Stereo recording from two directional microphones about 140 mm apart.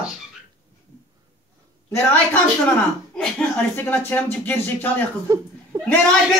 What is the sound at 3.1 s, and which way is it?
Speech, 10° left (ahead or behind).